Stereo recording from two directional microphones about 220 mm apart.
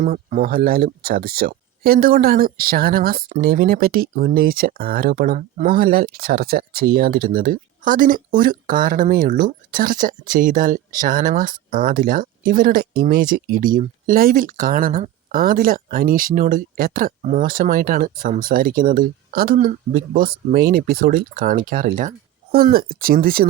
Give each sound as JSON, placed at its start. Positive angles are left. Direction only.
{"t": 0.0, "sound": "speech", "side_deg": -35}